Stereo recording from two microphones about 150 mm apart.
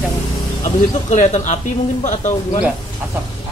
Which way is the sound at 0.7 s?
50° left (ahead or behind).